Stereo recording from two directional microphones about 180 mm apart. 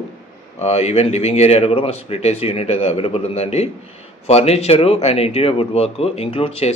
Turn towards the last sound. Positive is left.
turn(degrees=35)  # may be behind; listen again after turning